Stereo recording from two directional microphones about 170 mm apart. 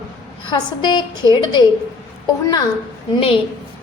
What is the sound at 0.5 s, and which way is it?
A woman's voice, 25° left (ahead or behind).